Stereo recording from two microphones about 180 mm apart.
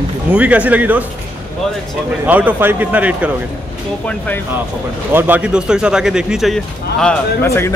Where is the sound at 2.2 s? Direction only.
10° right (ahead or behind).